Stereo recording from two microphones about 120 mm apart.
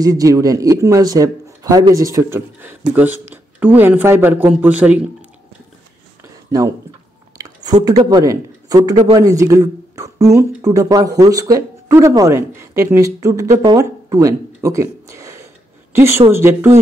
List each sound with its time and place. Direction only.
0.0 s a man's voice: 30° right (ahead or behind); by 5.0 s 10° right (ahead or behind)
7.3 s a sound: 30° right (ahead or behind)
7.8 s a man's voice: 35° right (ahead or behind)